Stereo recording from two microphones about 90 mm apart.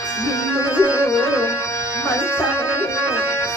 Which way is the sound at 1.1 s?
35° left (ahead or behind).